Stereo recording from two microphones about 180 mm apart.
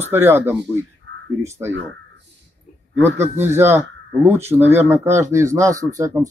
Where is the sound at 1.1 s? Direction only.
90° right.